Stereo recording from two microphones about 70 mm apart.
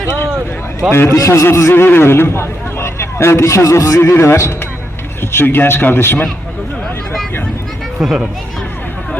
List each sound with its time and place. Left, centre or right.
0.9 s a man's voice: left
1.1 s a man's voice: left
7.9 s speech: centre